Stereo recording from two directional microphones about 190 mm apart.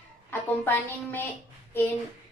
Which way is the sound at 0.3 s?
10° left (ahead or behind).